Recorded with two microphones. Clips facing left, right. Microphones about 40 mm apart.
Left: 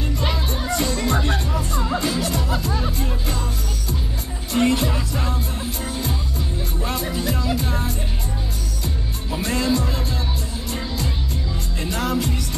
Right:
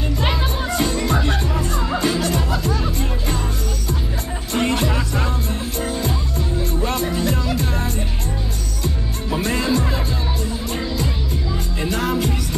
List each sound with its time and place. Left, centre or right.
0.2 s music: right
1.4 s music: right
2.0 s music: centre
4.5 s music: centre
6.8 s music: centre
9.4 s music: centre
11.8 s music: centre